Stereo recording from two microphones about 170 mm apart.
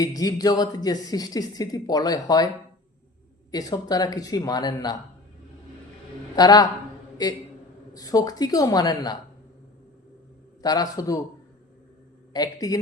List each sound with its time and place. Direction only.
0.0 s speech: 20° left (ahead or behind)
3.5 s speech: 20° left (ahead or behind)
6.3 s speech: 20° left (ahead or behind)
10.6 s speech: 20° left (ahead or behind)
12.3 s speech: 20° left (ahead or behind)